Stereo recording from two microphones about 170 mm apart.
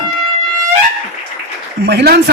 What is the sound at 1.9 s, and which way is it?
Speech, 75° right (ahead or behind).